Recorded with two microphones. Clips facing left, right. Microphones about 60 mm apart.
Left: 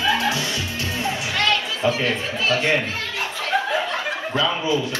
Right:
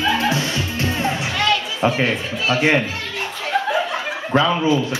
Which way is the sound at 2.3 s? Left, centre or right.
Centre.